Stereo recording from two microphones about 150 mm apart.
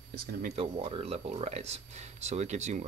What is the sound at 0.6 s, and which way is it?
Speech, 40° right (ahead or behind).